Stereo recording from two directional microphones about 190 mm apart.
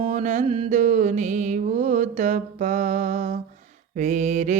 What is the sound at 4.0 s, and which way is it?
Mantra, 40° right (ahead or behind).